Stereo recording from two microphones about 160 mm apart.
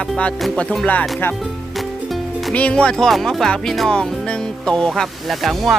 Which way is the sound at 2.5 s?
10° left (ahead or behind).